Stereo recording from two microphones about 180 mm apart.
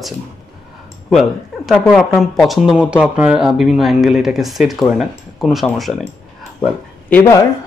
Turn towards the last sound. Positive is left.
turn(degrees=15)  # may be behind; listen again after turning